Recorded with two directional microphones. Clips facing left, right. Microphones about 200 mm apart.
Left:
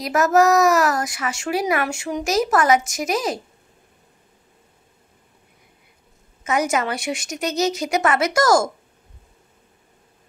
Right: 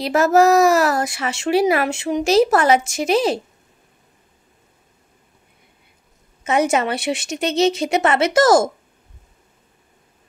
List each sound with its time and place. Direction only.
0.0 s speech: 30° right (ahead or behind)
6.4 s speech: 25° right (ahead or behind)